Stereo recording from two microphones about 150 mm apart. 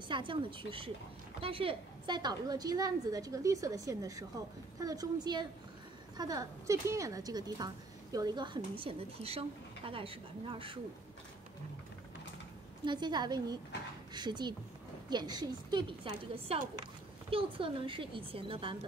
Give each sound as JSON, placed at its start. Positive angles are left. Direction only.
{"t": 0.1, "sound": "a woman's voice", "side_deg": -35}
{"t": 12.8, "sound": "a woman's voice", "side_deg": -30}
{"t": 17.3, "sound": "a woman's voice", "side_deg": -35}